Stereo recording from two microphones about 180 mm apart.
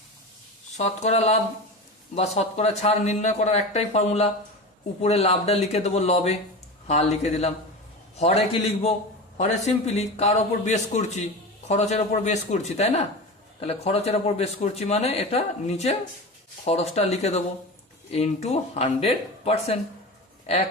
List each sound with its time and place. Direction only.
0.8 s speech: 35° left (ahead or behind)